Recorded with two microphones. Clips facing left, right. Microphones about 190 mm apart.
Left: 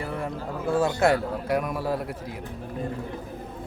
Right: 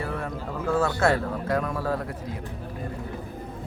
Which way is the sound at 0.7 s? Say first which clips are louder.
Left 1 dB; 15° left (ahead or behind).